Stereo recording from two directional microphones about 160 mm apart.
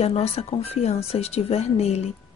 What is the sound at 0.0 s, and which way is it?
Speech, 40° left (ahead or behind).